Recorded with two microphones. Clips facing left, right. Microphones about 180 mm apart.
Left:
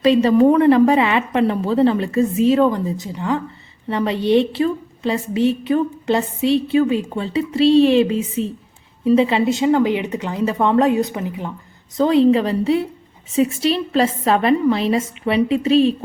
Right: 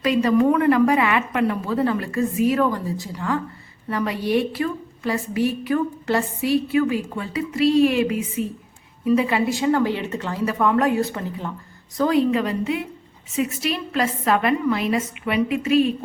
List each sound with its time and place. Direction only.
0.0 s a woman's voice: 30° left (ahead or behind)